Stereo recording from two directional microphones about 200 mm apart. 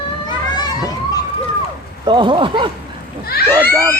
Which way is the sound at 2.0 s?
25° right (ahead or behind).